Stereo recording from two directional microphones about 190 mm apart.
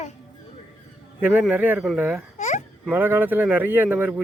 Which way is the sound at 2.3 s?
40° left (ahead or behind).